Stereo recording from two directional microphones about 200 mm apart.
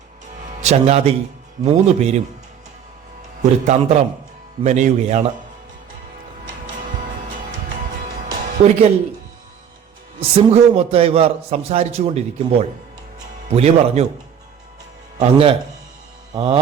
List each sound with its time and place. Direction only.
0.6 s a man's voice: 35° right (ahead or behind)
3.7 s a man's voice: 35° right (ahead or behind)
8.3 s music: 35° right (ahead or behind)
10.2 s a man's voice: 30° right (ahead or behind)
13.5 s a man's voice: 30° right (ahead or behind)
15.2 s speech: 30° right (ahead or behind)
16.3 s mantra: 25° right (ahead or behind)